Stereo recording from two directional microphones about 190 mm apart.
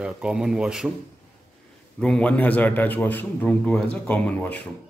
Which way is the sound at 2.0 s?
5° left (ahead or behind).